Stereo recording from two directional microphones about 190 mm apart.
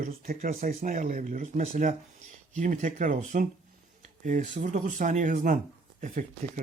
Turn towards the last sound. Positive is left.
turn(degrees=-40)  # may be behind; listen again after turning